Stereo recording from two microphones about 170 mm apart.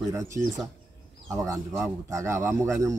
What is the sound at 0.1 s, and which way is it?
Speech, 20° right (ahead or behind).